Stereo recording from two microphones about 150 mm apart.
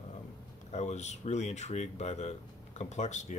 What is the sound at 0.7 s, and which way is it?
Speech, 50° left (ahead or behind).